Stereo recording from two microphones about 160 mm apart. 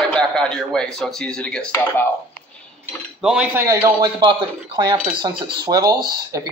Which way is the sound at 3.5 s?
15° right (ahead or behind).